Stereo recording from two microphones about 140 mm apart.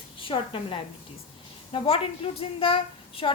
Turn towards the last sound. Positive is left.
turn(degrees=40)  # may be behind; listen again after turning